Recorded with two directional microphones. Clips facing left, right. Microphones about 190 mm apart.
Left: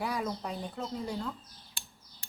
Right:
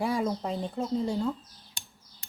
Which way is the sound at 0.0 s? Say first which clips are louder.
Right 6 dB; 25° right (ahead or behind).